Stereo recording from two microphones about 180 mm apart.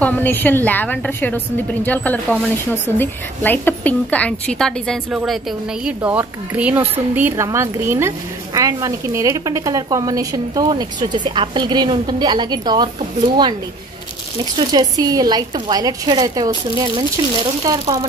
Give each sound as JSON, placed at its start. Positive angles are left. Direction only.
{"t": 0.0, "sound": "a woman's voice", "side_deg": 10}
{"t": 14.7, "sound": "speech", "side_deg": -20}